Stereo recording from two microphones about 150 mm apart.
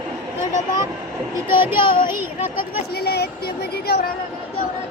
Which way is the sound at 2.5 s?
90° left.